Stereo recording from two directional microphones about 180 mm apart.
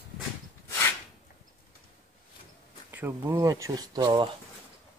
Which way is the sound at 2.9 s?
10° right (ahead or behind).